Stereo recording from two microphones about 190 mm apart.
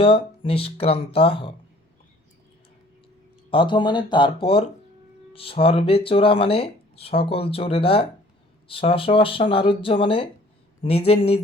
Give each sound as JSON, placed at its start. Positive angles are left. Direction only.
{"t": 0.0, "sound": "speech", "side_deg": 30}
{"t": 3.5, "sound": "speech", "side_deg": 25}